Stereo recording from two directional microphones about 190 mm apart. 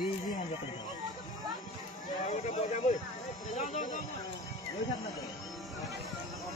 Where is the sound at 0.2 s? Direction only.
40° left (ahead or behind).